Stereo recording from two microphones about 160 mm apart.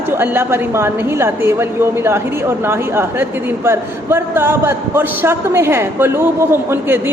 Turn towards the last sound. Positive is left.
turn(degrees=-15)  # may be behind; listen again after turning